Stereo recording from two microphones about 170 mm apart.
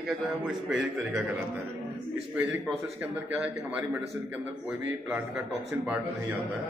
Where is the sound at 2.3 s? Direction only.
10° right (ahead or behind).